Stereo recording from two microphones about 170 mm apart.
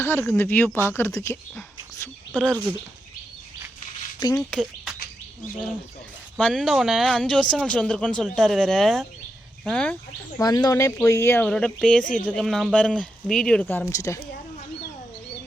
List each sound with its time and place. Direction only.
0.0 s speech: 15° left (ahead or behind)
2.3 s speech: 5° left (ahead or behind)
4.4 s speech: 5° left (ahead or behind)
6.3 s speech: 5° right (ahead or behind)
10.4 s speech: 20° left (ahead or behind)